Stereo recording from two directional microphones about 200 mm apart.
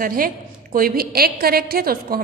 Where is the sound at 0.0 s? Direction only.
45° right (ahead or behind).